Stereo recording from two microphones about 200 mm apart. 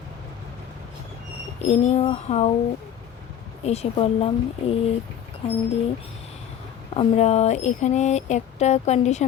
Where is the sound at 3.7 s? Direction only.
30° left (ahead or behind).